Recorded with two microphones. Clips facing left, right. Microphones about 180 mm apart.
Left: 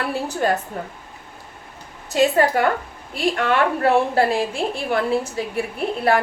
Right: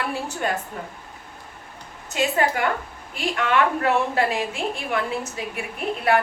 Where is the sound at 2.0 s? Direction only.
40° left (ahead or behind).